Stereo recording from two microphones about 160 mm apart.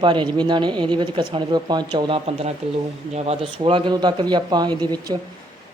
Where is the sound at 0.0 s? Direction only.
30° right (ahead or behind).